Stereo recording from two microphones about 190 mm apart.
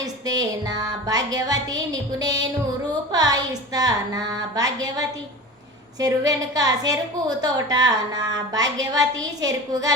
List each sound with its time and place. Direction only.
0.6 s a woman's voice: 20° right (ahead or behind)